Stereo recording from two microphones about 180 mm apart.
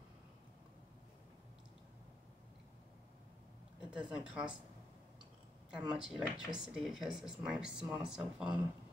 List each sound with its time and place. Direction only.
3.9 s speech: 5° right (ahead or behind)
5.7 s speech: 5° right (ahead or behind)